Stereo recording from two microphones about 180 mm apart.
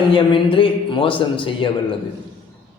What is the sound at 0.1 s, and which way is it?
A man's voice, 30° left (ahead or behind).